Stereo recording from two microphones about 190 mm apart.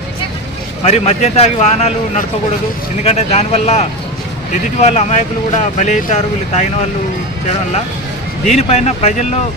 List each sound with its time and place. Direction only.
0.9 s speech: 35° left (ahead or behind)
8.6 s speech: 35° left (ahead or behind)